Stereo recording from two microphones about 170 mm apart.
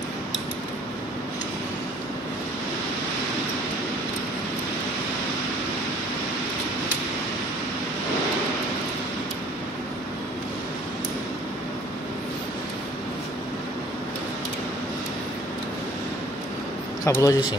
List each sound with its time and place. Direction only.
17.0 s a man's voice: 20° left (ahead or behind)